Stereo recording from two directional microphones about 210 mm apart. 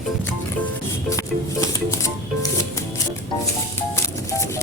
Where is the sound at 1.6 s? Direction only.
15° left (ahead or behind).